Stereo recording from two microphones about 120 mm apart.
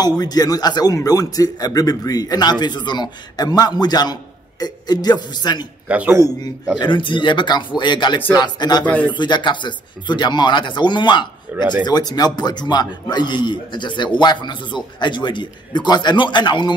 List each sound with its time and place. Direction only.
0.2 s speech: 30° left (ahead or behind)
5.9 s a man's voice: 10° right (ahead or behind)
6.8 s speech: 45° left (ahead or behind)